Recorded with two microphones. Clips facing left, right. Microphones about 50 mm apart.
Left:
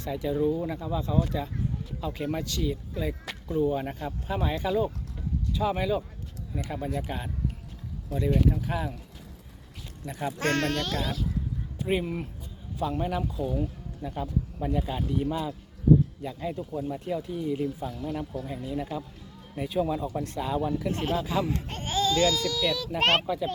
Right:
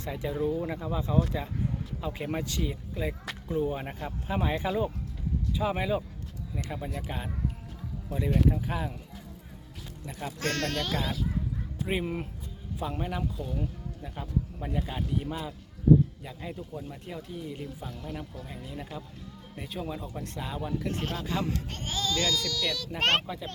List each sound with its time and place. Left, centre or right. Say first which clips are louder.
0.0 s speech: left 4 dB; right
0.3 s speech: left 3 dB; centre
0.7 s speech: left 1 dB; right
6.8 s speech: left 4 dB; centre
10.4 s a child's voice: left 4 dB; left
10.7 s speech: left 2 dB; centre
13.6 s speech: left 3 dB; centre